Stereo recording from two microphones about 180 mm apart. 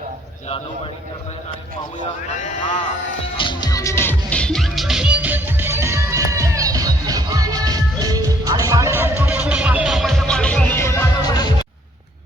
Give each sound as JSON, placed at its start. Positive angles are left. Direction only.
{"t": 2.0, "sound": "speech", "side_deg": 45}
{"t": 3.3, "sound": "music", "side_deg": 25}
{"t": 4.3, "sound": "music", "side_deg": 5}